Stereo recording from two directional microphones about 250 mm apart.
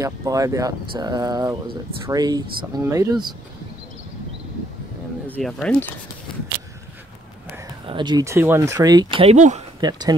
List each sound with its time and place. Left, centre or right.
0.0 s speech: centre
5.2 s speech: centre
7.8 s speech: centre
9.8 s speech: centre